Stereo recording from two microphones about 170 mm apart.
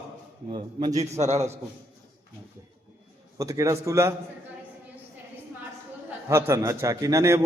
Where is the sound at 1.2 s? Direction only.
40° right (ahead or behind).